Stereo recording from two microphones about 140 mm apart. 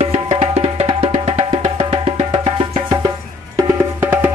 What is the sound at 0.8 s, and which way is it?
Music, 35° right (ahead or behind).